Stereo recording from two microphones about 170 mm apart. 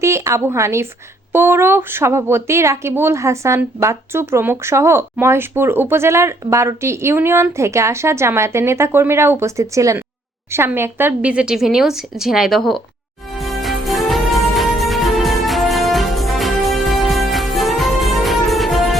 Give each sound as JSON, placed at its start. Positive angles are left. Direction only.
{"t": 0.0, "sound": "a woman's voice", "side_deg": -15}
{"t": 13.4, "sound": "music", "side_deg": 0}